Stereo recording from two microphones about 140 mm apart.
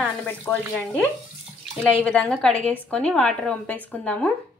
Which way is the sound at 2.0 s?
10° left (ahead or behind).